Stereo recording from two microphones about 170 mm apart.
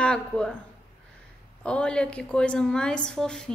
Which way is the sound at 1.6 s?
5° left (ahead or behind).